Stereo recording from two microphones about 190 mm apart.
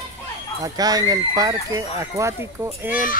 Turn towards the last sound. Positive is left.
turn(degrees=-10)  # may be behind; listen again after turning